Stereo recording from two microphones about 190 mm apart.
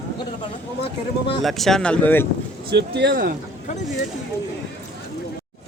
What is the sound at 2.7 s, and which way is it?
Speech, 60° right (ahead or behind).